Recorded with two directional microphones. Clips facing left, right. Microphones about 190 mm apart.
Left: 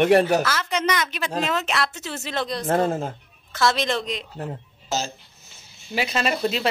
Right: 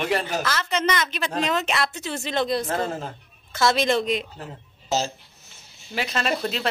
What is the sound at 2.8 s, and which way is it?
Speech, 25° left (ahead or behind).